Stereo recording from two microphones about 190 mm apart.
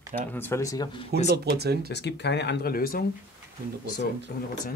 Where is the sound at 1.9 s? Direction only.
65° left (ahead or behind).